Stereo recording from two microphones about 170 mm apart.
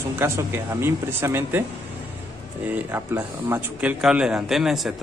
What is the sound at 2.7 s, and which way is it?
Speech, 15° right (ahead or behind).